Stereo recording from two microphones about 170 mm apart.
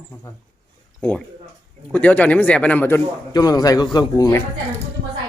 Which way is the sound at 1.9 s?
10° left (ahead or behind).